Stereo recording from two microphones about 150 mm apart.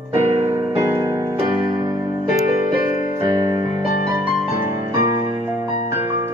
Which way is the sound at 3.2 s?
25° right (ahead or behind).